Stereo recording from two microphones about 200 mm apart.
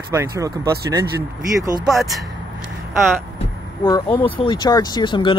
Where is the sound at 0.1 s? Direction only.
15° right (ahead or behind).